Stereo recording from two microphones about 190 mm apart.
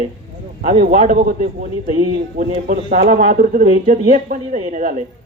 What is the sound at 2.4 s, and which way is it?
Speech, 50° right (ahead or behind).